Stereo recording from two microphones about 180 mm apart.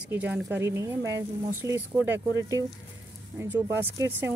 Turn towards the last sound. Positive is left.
turn(degrees=-15)  # may be behind; listen again after turning